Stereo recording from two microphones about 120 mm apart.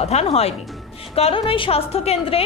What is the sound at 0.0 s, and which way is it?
A woman's voice, 60° left (ahead or behind).